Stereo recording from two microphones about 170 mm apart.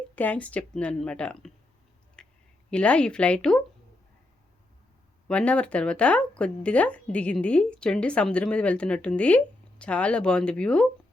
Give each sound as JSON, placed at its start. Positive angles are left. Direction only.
{"t": 0.2, "sound": "speech", "side_deg": 10}
{"t": 2.2, "sound": "a sound", "side_deg": 5}
{"t": 2.6, "sound": "speech", "side_deg": 5}
{"t": 5.3, "sound": "speech", "side_deg": 5}